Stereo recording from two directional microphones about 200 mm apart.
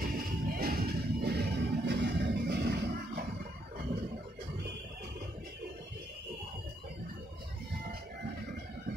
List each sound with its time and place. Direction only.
0.0 s music: 50° right (ahead or behind)